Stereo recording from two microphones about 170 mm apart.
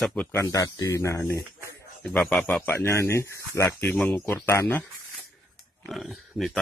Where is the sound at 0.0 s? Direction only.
10° left (ahead or behind).